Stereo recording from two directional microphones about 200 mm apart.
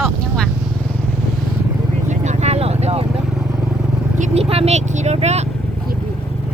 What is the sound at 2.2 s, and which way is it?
Vehicle, 35° right (ahead or behind).